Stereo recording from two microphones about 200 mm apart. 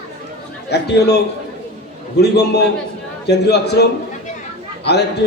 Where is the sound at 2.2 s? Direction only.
55° left (ahead or behind).